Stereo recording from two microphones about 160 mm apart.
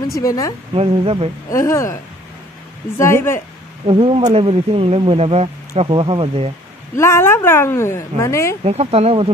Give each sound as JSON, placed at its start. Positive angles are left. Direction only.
{"t": 0.2, "sound": "speech", "side_deg": 20}
{"t": 0.7, "sound": "speech", "side_deg": -35}
{"t": 1.5, "sound": "speech", "side_deg": 20}
{"t": 3.0, "sound": "speech", "side_deg": 15}
{"t": 3.8, "sound": "speech", "side_deg": -35}
{"t": 7.0, "sound": "speech", "side_deg": 15}
{"t": 8.6, "sound": "speech", "side_deg": -40}